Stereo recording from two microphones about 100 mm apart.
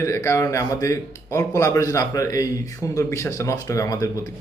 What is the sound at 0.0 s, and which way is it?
A man's voice, 30° left (ahead or behind).